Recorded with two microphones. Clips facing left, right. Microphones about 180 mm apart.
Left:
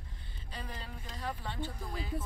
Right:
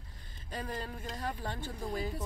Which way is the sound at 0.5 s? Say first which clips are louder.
Right 6 dB; 45° right (ahead or behind).